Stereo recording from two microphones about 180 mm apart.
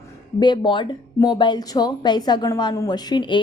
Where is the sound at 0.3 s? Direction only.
25° left (ahead or behind).